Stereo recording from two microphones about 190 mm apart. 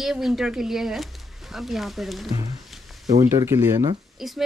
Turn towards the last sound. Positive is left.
turn(degrees=0)  # may be behind; listen again after turning